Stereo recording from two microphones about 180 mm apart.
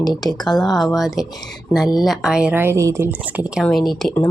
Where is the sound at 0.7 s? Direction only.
Centre (ahead or behind).